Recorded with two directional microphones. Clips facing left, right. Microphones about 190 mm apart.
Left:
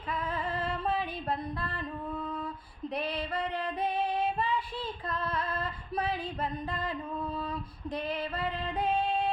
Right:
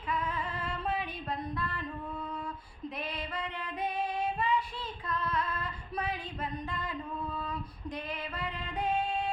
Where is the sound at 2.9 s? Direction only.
35° left (ahead or behind).